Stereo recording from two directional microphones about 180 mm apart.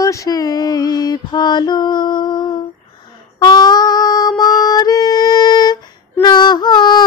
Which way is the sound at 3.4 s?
20° left (ahead or behind).